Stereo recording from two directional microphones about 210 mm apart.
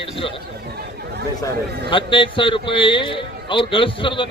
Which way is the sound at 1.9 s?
25° left (ahead or behind).